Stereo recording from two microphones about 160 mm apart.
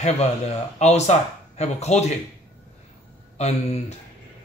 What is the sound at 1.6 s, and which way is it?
Speech, 45° left (ahead or behind).